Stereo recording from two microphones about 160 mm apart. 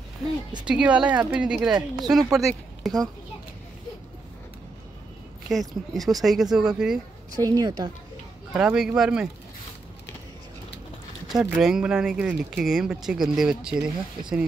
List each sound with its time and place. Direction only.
0.2 s speech: centre (ahead or behind)
5.5 s speech: centre (ahead or behind)
7.3 s a woman's voice: 25° right (ahead or behind)
8.5 s speech: 5° right (ahead or behind)
11.2 s speech: 5° right (ahead or behind)